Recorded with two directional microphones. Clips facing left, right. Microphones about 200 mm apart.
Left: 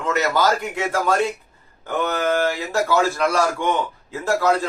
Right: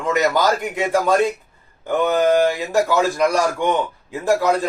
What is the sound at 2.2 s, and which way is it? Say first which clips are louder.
A man's voice: right 4 dB; 15° right (ahead or behind).